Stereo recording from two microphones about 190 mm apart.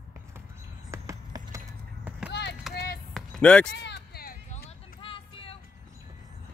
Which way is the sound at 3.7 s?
60° left (ahead or behind).